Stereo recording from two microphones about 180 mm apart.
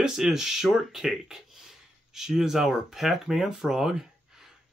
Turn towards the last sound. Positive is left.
turn(degrees=-5)  # may be behind; listen again after turning